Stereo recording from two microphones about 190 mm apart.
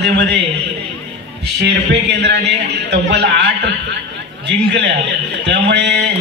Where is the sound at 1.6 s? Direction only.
65° right (ahead or behind).